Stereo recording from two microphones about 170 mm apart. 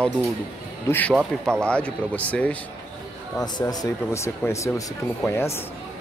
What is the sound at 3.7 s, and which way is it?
Speech, 20° left (ahead or behind).